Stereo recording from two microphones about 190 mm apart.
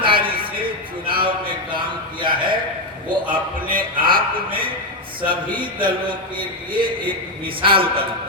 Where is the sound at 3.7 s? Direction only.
50° right (ahead or behind).